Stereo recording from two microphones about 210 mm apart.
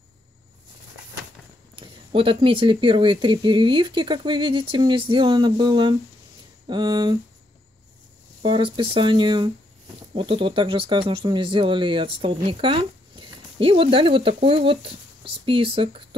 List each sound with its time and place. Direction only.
1.8 s speech: 25° right (ahead or behind)
8.4 s speech: 25° right (ahead or behind)